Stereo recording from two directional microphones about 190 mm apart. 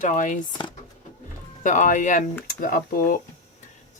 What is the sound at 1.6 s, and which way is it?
Speech, 40° left (ahead or behind).